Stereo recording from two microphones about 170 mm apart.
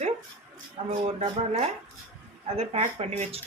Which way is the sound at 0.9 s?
35° right (ahead or behind).